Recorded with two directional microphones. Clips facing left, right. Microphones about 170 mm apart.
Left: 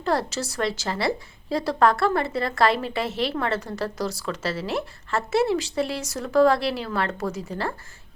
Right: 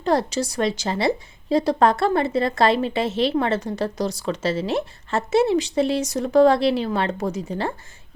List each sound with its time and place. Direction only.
0.0 s a woman's voice: 20° right (ahead or behind)